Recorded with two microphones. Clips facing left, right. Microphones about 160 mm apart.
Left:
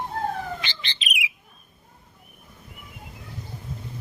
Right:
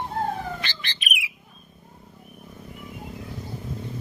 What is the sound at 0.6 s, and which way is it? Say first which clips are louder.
Bird: right 1 dB; 20° left (ahead or behind).